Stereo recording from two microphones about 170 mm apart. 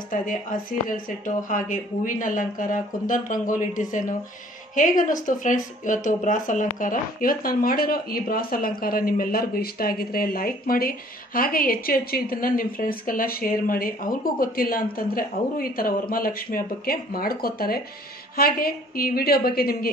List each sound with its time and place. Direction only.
0.1 s a woman's voice: 50° left (ahead or behind)